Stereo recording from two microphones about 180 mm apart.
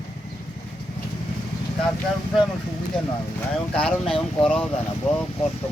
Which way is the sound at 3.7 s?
5° left (ahead or behind).